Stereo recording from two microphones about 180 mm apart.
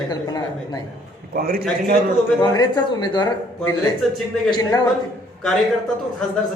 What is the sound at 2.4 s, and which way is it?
Speech, 20° left (ahead or behind).